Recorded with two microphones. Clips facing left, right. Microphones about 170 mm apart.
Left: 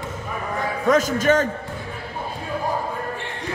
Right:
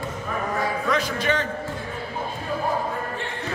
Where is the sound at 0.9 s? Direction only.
45° left (ahead or behind).